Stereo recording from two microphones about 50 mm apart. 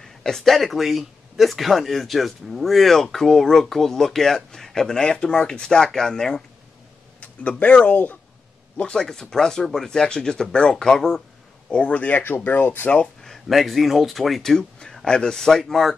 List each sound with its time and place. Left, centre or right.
0.0 s speech: centre
7.2 s speech: left
8.7 s speech: centre
11.7 s speech: left
13.0 s speech: centre